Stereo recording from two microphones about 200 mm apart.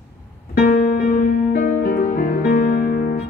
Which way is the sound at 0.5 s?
45° left (ahead or behind).